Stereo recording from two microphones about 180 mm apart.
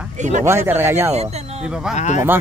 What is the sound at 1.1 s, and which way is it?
Speech, 35° right (ahead or behind).